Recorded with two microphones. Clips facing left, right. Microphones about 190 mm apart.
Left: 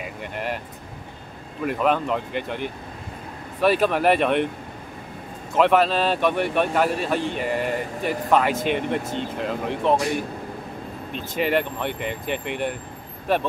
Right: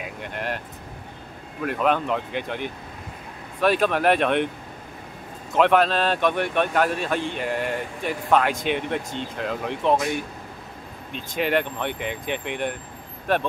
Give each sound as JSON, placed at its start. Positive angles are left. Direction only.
{"t": 0.0, "sound": "speech", "side_deg": 0}
{"t": 1.6, "sound": "speech", "side_deg": 0}
{"t": 3.6, "sound": "speech", "side_deg": 5}
{"t": 5.6, "sound": "speech", "side_deg": 5}
{"t": 11.3, "sound": "speech", "side_deg": 5}